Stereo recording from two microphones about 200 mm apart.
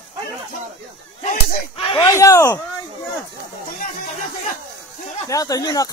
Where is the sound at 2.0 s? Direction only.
15° left (ahead or behind).